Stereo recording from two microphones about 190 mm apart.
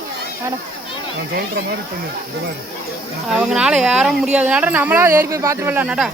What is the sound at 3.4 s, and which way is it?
Speech, 5° right (ahead or behind).